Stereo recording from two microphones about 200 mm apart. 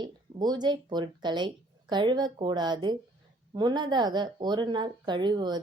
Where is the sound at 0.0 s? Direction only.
20° right (ahead or behind).